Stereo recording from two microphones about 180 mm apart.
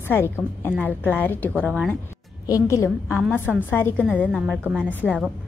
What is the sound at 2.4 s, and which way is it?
A woman's voice, 20° left (ahead or behind).